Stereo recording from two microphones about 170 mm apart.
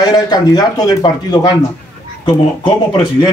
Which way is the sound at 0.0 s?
25° left (ahead or behind).